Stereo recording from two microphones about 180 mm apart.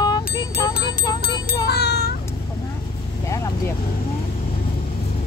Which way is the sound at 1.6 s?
65° left (ahead or behind).